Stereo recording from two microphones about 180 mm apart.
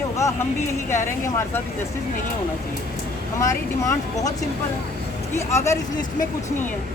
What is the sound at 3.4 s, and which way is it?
Speech, 15° left (ahead or behind).